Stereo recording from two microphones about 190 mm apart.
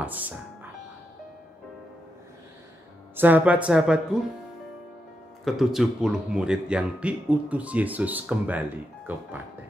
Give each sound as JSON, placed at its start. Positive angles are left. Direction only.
{"t": 0.0, "sound": "speech", "side_deg": -10}
{"t": 3.2, "sound": "speech", "side_deg": -10}
{"t": 5.4, "sound": "speech", "side_deg": 0}